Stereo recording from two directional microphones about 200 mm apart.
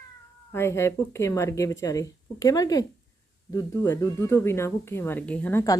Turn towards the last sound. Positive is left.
turn(degrees=15)  # may be behind; listen again after turning